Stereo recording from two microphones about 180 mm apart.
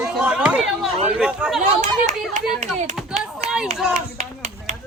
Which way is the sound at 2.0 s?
40° right (ahead or behind).